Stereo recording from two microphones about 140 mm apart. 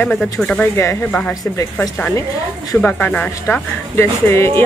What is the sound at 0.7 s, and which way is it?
Speech, 20° left (ahead or behind).